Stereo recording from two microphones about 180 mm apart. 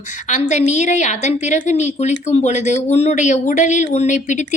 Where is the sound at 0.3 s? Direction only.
40° left (ahead or behind).